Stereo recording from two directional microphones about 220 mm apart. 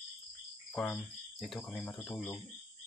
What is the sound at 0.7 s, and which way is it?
Speech, centre (ahead or behind).